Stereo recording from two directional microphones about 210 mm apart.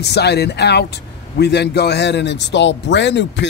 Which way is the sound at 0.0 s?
50° left (ahead or behind).